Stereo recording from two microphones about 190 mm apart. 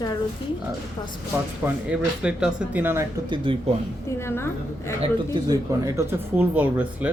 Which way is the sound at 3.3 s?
25° right (ahead or behind).